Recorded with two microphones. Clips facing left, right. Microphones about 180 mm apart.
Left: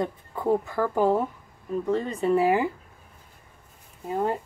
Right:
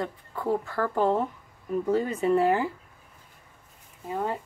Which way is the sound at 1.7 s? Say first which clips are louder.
Right 1 dB; 5° right (ahead or behind).